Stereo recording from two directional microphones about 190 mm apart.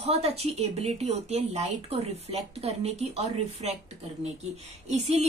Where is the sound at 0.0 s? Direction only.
30° right (ahead or behind).